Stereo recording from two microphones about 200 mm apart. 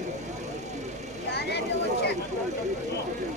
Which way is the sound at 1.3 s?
55° left (ahead or behind).